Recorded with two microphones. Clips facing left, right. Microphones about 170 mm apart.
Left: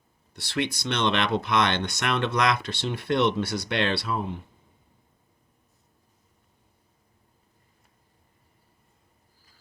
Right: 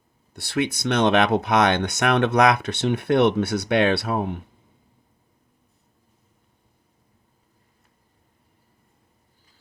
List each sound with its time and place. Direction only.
0.3 s speech: 55° right (ahead or behind)